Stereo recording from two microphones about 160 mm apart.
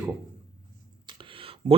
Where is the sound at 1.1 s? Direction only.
35° right (ahead or behind).